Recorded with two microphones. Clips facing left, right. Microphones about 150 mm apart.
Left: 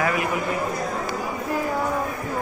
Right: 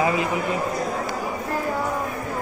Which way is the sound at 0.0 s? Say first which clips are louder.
Right 2 dB; 25° right (ahead or behind).